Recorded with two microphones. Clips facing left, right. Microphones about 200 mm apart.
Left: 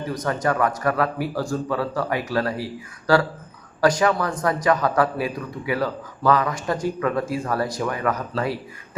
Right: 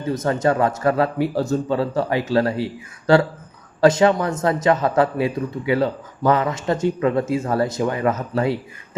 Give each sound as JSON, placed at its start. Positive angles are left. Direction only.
{"t": 0.0, "sound": "speech", "side_deg": -25}